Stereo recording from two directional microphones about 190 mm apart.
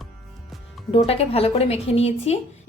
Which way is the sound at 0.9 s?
30° left (ahead or behind).